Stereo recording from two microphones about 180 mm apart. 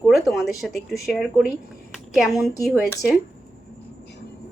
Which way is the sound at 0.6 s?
Centre (ahead or behind).